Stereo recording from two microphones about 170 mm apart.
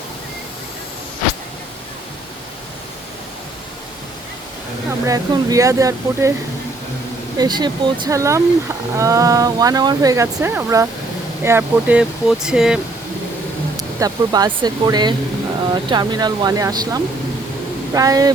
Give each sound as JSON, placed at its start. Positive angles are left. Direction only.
{"t": 5.0, "sound": "speech", "side_deg": -20}
{"t": 7.3, "sound": "speech", "side_deg": -25}
{"t": 13.7, "sound": "speech", "side_deg": -20}